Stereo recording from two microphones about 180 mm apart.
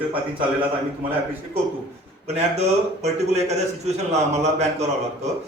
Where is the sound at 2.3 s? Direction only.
35° right (ahead or behind).